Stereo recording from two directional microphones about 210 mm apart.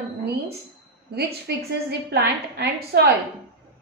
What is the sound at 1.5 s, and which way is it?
A woman's voice, 50° right (ahead or behind).